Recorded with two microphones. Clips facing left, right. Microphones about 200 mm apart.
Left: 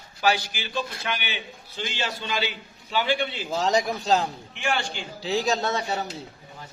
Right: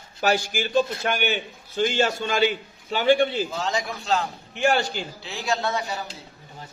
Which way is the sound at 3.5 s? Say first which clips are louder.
Left 4 dB; 40° left (ahead or behind).